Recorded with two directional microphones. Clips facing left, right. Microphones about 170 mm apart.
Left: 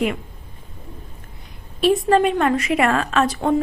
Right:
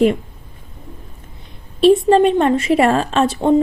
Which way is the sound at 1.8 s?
30° right (ahead or behind).